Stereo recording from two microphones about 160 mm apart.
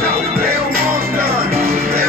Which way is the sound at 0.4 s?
70° right (ahead or behind).